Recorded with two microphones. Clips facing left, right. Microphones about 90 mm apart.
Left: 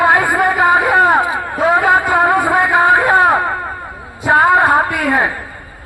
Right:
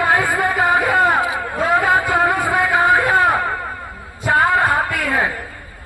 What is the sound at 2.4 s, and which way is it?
Music, 25° left (ahead or behind).